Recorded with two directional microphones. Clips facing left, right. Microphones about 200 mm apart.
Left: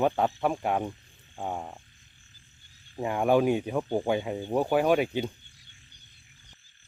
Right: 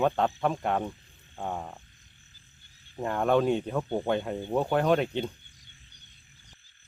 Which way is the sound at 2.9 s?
10° left (ahead or behind).